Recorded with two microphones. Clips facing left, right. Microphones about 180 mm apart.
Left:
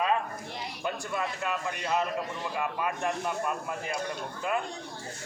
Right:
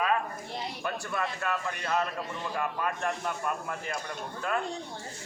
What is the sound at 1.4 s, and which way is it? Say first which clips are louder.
Speech: even; 15° left (ahead or behind).